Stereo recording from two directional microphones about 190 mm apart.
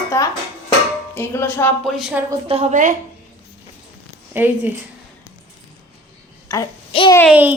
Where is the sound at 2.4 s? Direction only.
35° right (ahead or behind).